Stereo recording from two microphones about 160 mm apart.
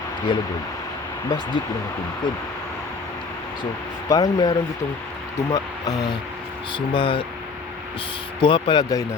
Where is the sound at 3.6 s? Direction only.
25° left (ahead or behind).